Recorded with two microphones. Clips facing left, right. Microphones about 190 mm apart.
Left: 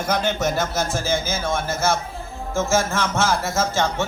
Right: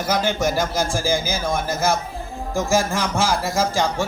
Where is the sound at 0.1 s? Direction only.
10° right (ahead or behind).